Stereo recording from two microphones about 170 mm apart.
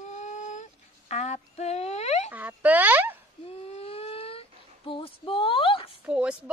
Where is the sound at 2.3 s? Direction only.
10° right (ahead or behind).